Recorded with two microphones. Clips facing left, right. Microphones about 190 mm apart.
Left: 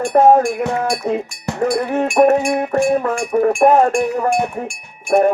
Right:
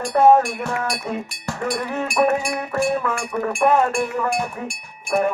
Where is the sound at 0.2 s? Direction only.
40° left (ahead or behind).